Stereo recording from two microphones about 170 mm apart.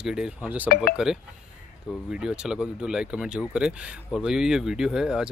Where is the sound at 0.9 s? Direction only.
5° right (ahead or behind).